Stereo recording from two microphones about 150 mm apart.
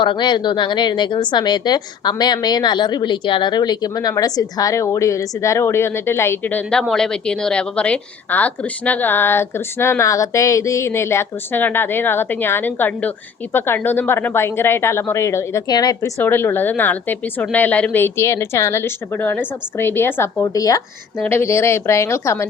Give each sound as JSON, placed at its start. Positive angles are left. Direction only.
{"t": 0.0, "sound": "a woman's voice", "side_deg": 30}